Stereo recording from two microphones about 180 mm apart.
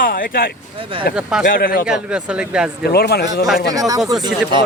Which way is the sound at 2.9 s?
60° left (ahead or behind).